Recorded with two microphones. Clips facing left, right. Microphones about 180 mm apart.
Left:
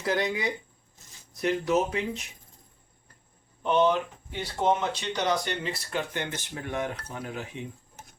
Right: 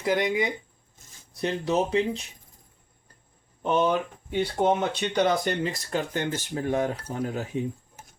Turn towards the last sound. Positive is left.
turn(degrees=-40)  # may be behind; listen again after turning